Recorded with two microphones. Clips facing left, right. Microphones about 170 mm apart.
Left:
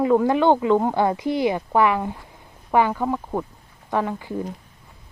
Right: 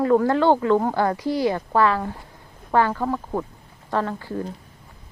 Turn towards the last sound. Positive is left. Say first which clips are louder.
# left 1 dB
turn(degrees=15)  # may be behind; listen again after turning